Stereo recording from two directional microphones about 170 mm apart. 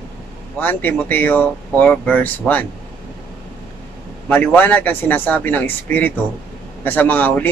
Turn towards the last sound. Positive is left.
turn(degrees=10)  # may be behind; listen again after turning